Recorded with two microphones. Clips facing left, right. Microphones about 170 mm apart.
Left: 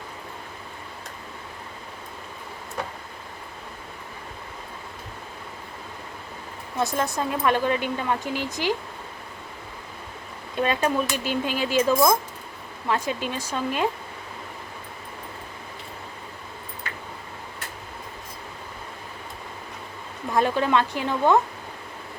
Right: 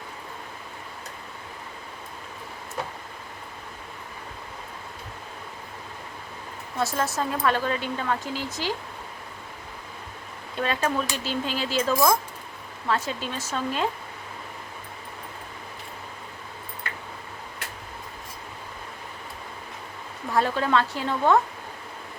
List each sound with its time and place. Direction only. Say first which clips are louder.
6.7 s speech: left 1 dB; 15° left (ahead or behind)
10.6 s speech: left 3 dB; 15° left (ahead or behind)
20.3 s speech: left 1 dB; 15° left (ahead or behind)